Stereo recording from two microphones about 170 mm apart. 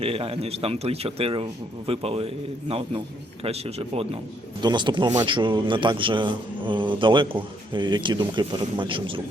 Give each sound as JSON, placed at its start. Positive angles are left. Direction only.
{"t": 0.0, "sound": "a man's voice", "side_deg": -35}